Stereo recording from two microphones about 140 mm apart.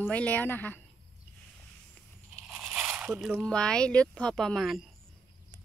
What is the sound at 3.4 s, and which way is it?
A woman's voice, 5° left (ahead or behind).